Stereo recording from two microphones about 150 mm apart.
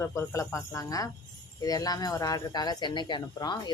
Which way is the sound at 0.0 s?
20° left (ahead or behind).